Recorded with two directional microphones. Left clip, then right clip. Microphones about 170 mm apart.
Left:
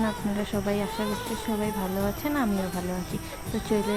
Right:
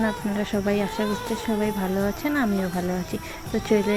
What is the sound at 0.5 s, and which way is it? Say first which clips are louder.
Speech: right 5 dB; 20° right (ahead or behind).